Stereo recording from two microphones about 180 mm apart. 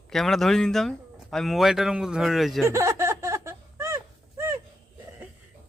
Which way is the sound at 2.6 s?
15° right (ahead or behind).